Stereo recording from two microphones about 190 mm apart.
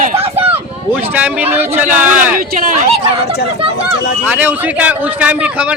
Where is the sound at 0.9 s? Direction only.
10° right (ahead or behind).